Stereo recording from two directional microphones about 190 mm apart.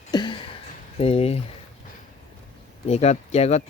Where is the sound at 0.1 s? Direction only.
25° left (ahead or behind).